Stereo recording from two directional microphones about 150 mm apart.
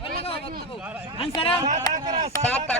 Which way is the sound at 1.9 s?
25° left (ahead or behind).